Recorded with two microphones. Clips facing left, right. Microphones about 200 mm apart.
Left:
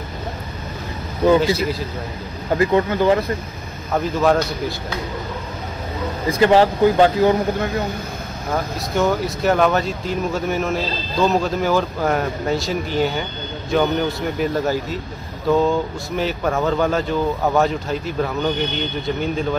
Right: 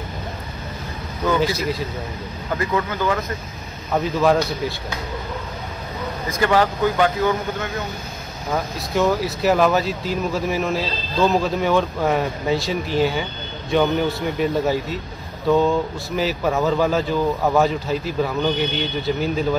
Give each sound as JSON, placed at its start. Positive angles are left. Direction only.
{"t": 2.5, "sound": "speech", "side_deg": 30}
{"t": 3.9, "sound": "speech", "side_deg": 0}
{"t": 6.2, "sound": "speech", "side_deg": 30}
{"t": 8.5, "sound": "speech", "side_deg": 0}